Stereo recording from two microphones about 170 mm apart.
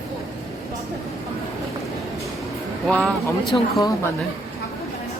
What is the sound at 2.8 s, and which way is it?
Speech, centre (ahead or behind).